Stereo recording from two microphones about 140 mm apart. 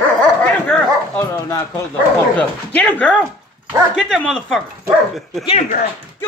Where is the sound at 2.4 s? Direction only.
10° left (ahead or behind).